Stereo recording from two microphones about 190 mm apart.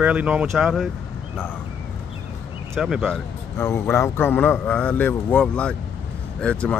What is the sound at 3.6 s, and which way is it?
Speech, 15° left (ahead or behind).